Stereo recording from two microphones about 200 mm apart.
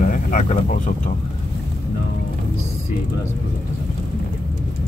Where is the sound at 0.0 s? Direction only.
40° left (ahead or behind).